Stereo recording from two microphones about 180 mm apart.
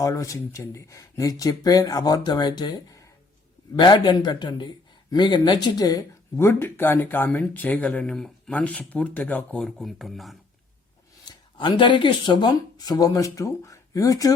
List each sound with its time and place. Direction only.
0.0 s speech: 20° left (ahead or behind); by 10.3 s centre (ahead or behind)
11.3 s speech: 25° left (ahead or behind)